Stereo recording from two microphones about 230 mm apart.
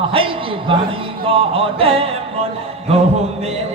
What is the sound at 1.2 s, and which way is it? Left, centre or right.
Speech, right.